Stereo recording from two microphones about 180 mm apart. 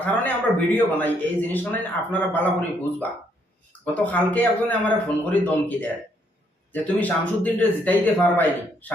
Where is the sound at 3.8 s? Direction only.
10° left (ahead or behind).